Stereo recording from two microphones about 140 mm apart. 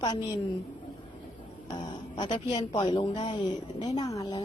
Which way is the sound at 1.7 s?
30° left (ahead or behind).